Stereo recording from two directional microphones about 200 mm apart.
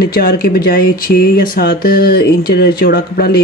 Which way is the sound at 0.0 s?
50° left (ahead or behind).